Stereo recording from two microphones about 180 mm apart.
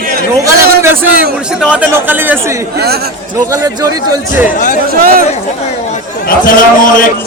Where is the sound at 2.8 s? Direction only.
60° right (ahead or behind).